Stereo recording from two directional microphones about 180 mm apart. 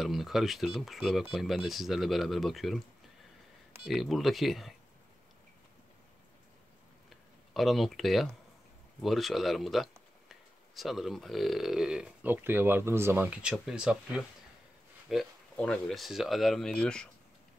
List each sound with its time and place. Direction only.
0.0 s speech: centre (ahead or behind)
3.8 s speech: centre (ahead or behind)
7.5 s speech: centre (ahead or behind)